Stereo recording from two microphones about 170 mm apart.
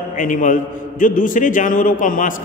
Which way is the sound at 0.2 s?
50° left (ahead or behind).